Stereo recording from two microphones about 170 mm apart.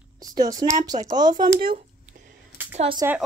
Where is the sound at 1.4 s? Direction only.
55° right (ahead or behind).